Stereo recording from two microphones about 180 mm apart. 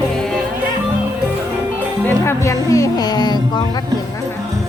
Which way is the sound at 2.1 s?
15° left (ahead or behind).